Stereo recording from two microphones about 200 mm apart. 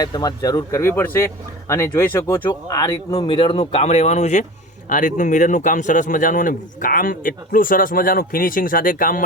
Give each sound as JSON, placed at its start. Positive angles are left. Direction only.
{"t": 0.0, "sound": "a man's voice", "side_deg": 20}